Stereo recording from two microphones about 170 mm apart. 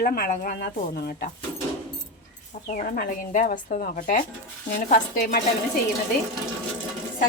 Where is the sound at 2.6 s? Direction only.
50° left (ahead or behind).